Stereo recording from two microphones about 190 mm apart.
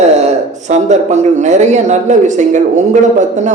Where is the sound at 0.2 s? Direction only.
35° right (ahead or behind).